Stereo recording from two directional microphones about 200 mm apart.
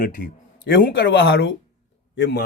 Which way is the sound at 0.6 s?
55° left (ahead or behind).